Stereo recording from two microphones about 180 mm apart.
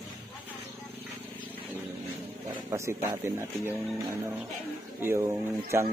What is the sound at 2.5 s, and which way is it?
Speech, 15° right (ahead or behind).